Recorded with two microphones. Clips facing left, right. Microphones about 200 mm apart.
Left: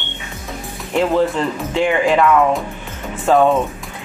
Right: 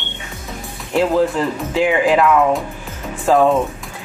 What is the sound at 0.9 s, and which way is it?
Speech, 5° right (ahead or behind).